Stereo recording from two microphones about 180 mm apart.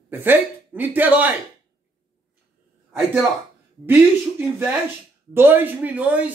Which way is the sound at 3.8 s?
10° right (ahead or behind).